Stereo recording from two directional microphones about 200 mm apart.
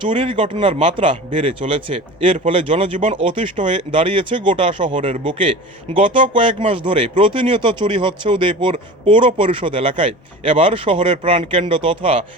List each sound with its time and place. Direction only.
0.0 s speech: 25° right (ahead or behind)